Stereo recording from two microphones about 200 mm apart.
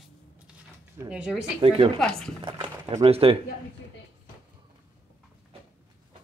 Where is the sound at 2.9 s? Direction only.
30° right (ahead or behind).